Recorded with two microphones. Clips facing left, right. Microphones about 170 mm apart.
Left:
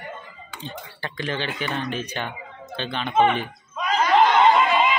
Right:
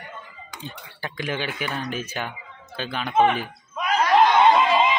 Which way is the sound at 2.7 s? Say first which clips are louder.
Even; 5° right (ahead or behind).